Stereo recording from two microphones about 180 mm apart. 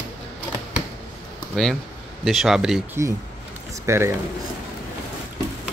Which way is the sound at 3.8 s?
15° right (ahead or behind).